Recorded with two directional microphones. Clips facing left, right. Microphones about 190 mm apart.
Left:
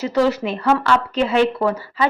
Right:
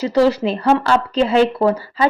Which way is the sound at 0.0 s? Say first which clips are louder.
Right 3 dB; 35° right (ahead or behind).